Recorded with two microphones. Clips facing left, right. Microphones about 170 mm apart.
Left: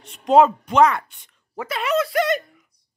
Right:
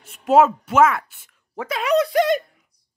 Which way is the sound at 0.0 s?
5° right (ahead or behind).